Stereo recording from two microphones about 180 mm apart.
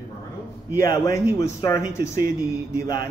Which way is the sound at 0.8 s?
15° left (ahead or behind).